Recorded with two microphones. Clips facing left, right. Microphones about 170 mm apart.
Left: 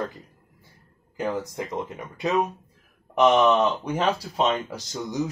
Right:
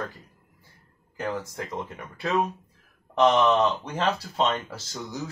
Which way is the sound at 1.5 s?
20° left (ahead or behind).